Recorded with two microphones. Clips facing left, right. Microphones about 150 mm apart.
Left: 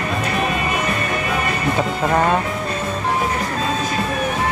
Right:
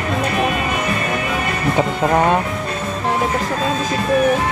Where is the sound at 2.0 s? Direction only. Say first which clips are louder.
Right 2 dB; 5° right (ahead or behind).